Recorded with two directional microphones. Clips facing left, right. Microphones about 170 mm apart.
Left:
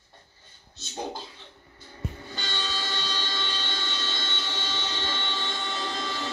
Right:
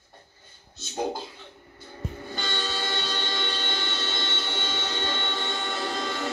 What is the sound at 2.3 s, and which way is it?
Train, 55° right (ahead or behind).